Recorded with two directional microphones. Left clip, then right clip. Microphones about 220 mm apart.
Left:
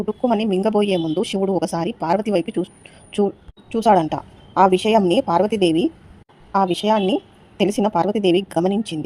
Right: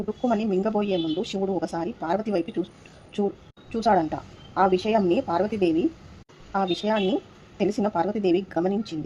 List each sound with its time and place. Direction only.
0.0 s a woman's voice: 15° left (ahead or behind)